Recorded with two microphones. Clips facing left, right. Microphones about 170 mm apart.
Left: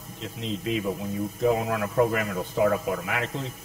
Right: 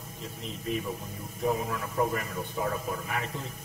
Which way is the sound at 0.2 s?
90° left.